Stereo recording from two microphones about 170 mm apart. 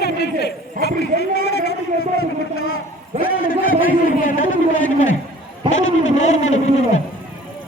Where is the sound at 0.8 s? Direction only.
50° right (ahead or behind).